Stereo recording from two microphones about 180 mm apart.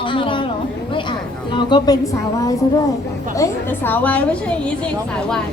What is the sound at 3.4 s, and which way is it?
A woman's voice, 10° left (ahead or behind).